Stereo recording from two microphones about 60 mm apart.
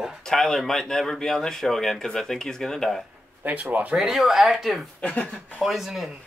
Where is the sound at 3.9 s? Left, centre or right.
Centre.